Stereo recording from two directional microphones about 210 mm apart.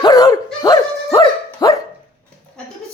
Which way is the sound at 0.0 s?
15° left (ahead or behind).